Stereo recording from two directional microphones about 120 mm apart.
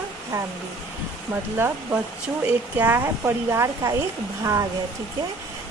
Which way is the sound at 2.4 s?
15° right (ahead or behind).